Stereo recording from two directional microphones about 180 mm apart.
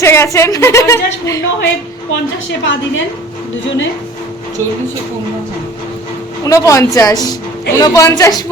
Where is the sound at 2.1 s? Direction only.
90° left.